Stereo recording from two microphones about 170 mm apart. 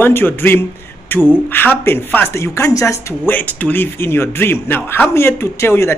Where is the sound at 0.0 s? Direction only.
10° left (ahead or behind).